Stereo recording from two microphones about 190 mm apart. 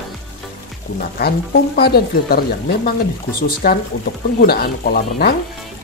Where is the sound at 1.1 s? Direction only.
55° left (ahead or behind).